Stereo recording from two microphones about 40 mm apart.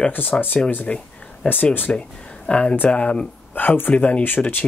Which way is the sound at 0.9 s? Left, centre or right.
Left.